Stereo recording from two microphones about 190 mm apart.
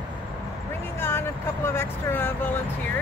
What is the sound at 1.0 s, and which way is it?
Speech, 15° left (ahead or behind).